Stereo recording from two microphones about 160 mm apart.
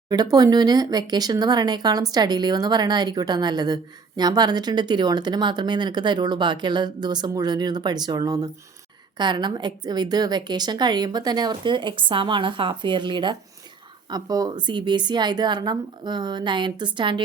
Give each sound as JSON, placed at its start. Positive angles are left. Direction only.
{"t": 0.1, "sound": "speech", "side_deg": -25}